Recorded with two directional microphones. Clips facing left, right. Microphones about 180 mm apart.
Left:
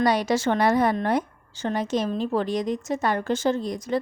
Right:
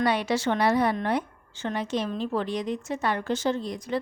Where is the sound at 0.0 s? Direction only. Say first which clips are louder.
Left 3 dB; 40° left (ahead or behind).